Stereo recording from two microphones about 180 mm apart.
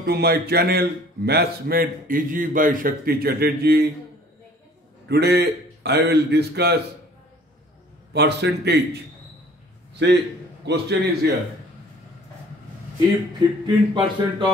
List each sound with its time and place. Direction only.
0.0 s speech: 65° right (ahead or behind)
5.0 s speech: 65° right (ahead or behind)
8.1 s a man's voice: 70° right (ahead or behind)
10.0 s a man's voice: 70° right (ahead or behind)
13.7 s a man's voice: 25° right (ahead or behind)